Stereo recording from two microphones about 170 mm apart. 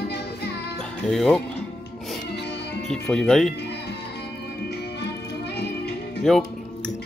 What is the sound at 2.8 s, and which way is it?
Speech, 5° left (ahead or behind).